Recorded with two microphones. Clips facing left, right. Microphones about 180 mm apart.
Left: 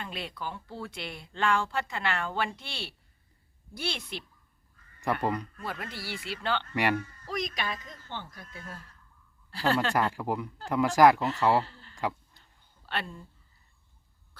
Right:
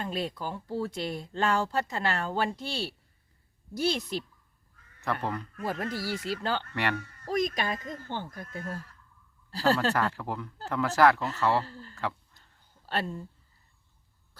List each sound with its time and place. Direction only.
0.0 s speech: 40° right (ahead or behind)
5.2 s speech: 15° left (ahead or behind)
5.8 s speech: 40° right (ahead or behind)
6.7 s speech: 15° left (ahead or behind)
7.3 s speech: 45° right (ahead or behind)
9.9 s speech: 15° left (ahead or behind)
11.6 s a sound: 40° right (ahead or behind)